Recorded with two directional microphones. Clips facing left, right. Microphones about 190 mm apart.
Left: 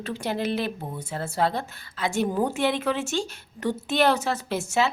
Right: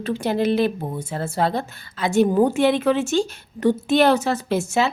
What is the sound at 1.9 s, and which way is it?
A woman's voice, 30° right (ahead or behind).